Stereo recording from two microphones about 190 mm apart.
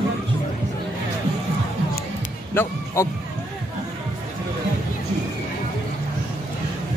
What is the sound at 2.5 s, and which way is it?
Speech, 15° left (ahead or behind).